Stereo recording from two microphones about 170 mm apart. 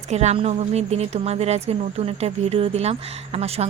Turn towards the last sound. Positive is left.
turn(degrees=-40)  # may be behind; listen again after turning